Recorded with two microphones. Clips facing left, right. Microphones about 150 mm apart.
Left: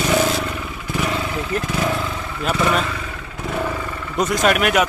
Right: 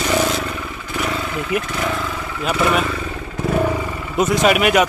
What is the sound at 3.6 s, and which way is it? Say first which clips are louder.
Vehicle: right 4 dB; 15° right (ahead or behind).